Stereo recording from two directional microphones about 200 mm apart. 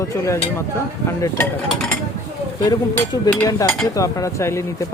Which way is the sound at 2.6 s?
15° left (ahead or behind).